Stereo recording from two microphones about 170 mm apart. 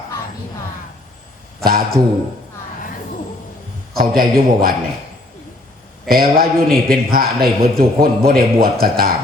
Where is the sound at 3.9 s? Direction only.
60° right (ahead or behind).